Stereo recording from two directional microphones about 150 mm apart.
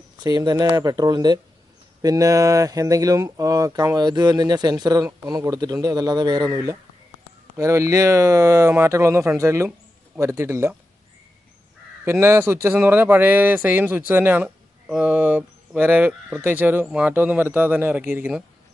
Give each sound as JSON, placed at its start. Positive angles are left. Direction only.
{"t": 0.2, "sound": "speech", "side_deg": -25}
{"t": 12.0, "sound": "speech", "side_deg": -15}